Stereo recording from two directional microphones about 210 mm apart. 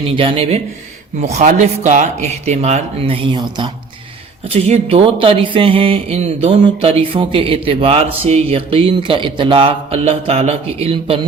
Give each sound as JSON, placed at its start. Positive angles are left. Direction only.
{"t": 0.2, "sound": "speech", "side_deg": -25}